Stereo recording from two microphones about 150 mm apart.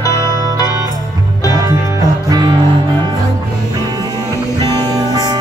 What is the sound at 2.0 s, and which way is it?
Music, 25° right (ahead or behind).